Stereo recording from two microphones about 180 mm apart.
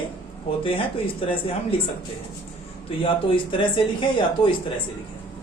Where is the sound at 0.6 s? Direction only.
30° left (ahead or behind).